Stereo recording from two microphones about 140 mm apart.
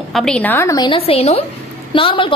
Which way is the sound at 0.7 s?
40° left (ahead or behind).